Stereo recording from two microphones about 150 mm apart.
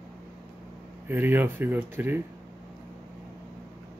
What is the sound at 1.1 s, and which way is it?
Speech, 15° right (ahead or behind).